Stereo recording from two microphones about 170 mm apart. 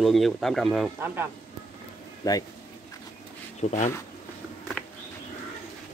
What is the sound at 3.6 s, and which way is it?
Speech, 45° left (ahead or behind).